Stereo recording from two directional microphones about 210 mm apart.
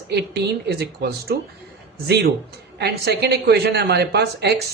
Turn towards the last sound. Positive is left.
turn(degrees=-50)  # may be behind; listen again after turning